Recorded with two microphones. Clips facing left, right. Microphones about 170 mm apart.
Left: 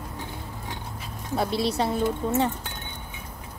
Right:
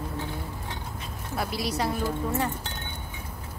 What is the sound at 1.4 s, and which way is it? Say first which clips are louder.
Speech: left 4 dB; 25° left (ahead or behind).